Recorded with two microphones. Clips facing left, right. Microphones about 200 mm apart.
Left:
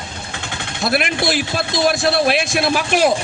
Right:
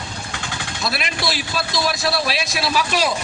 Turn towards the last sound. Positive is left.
turn(degrees=50)  # may be behind; listen again after turning